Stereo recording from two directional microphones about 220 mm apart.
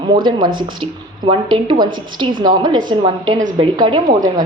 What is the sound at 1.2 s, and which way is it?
A woman's voice, 20° right (ahead or behind).